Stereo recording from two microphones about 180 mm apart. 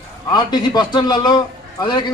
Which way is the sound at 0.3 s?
25° left (ahead or behind).